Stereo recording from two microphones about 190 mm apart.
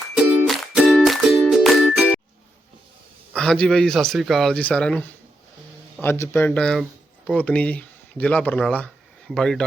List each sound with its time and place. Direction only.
0.3 s music: 5° right (ahead or behind)
3.3 s speech: 5° left (ahead or behind)